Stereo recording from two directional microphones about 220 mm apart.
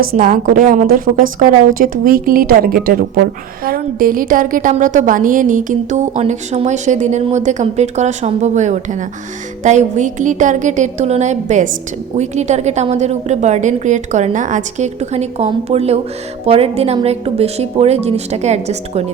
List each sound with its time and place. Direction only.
0.1 s a woman's voice: 35° right (ahead or behind)